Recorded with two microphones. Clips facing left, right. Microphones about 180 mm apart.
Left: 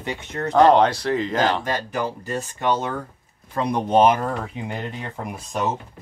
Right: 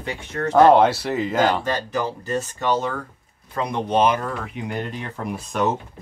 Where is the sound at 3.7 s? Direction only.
40° left (ahead or behind).